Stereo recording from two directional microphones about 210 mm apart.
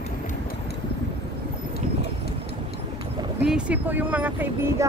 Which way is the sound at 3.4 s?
5° right (ahead or behind).